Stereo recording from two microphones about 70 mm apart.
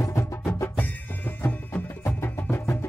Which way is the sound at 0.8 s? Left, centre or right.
Left.